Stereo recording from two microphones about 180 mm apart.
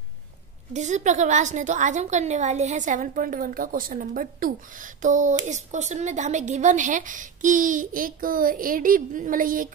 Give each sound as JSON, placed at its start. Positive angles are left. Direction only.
{"t": 0.7, "sound": "a woman's voice", "side_deg": -40}